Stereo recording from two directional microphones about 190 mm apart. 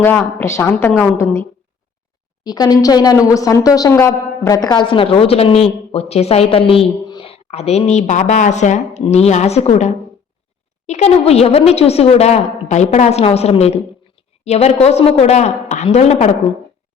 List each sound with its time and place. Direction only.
0.0 s a woman's voice: 10° left (ahead or behind); by 16.4 s 35° left (ahead or behind)